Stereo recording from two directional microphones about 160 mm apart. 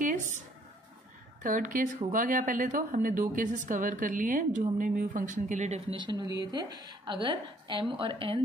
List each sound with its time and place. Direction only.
1.4 s speech: 55° right (ahead or behind)
5.9 s a woman's voice: 25° right (ahead or behind)